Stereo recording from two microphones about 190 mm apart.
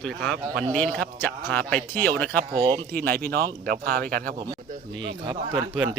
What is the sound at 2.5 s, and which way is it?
Speech, 20° right (ahead or behind).